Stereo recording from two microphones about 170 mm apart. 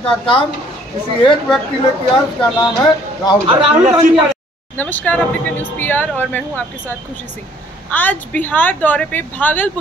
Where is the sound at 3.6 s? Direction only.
30° right (ahead or behind).